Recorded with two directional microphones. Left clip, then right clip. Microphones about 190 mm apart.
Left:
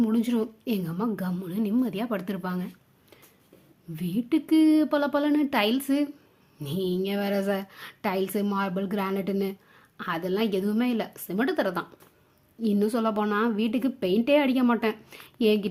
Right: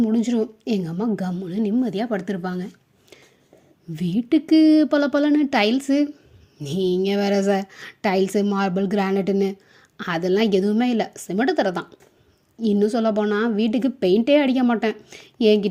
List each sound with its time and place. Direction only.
0.0 s a woman's voice: 15° right (ahead or behind)
3.9 s a woman's voice: 20° right (ahead or behind)